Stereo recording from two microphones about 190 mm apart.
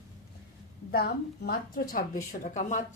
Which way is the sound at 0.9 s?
55° left (ahead or behind).